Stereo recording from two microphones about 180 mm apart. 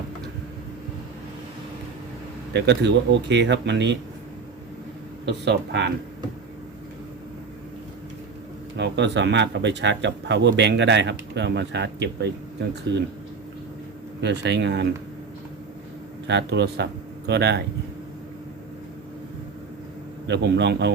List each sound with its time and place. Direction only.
2.5 s speech: 70° right (ahead or behind)
5.2 s speech: 75° right (ahead or behind)
8.7 s speech: 75° right (ahead or behind)
14.2 s speech: 75° right (ahead or behind)
16.2 s speech: 75° right (ahead or behind)
20.2 s speech: 75° right (ahead or behind)